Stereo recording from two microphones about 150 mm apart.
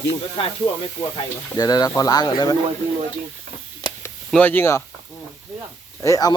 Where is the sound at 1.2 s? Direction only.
25° left (ahead or behind).